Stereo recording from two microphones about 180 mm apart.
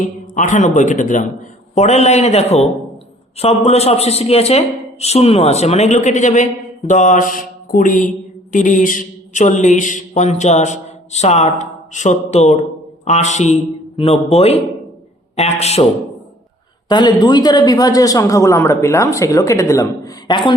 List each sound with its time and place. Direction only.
0.0 s a man's voice: 45° left (ahead or behind)
16.9 s a man's voice: 25° left (ahead or behind)